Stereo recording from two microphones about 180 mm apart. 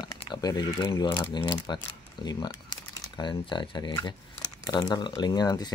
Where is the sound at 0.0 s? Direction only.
25° left (ahead or behind).